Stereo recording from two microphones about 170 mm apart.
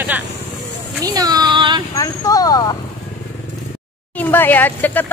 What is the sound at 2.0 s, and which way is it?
Speech, 20° left (ahead or behind).